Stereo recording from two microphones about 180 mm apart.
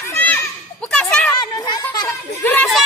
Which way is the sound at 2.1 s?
10° left (ahead or behind).